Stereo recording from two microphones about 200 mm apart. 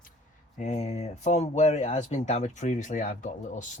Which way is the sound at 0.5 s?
35° left (ahead or behind).